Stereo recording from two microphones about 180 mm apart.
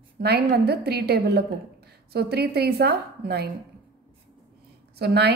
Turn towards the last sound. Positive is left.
turn(degrees=-65)  # may be behind; listen again after turning